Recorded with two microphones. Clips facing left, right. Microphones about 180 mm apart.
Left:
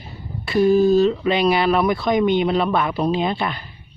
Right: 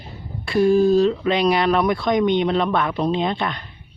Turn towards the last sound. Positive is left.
turn(degrees=5)  # may be behind; listen again after turning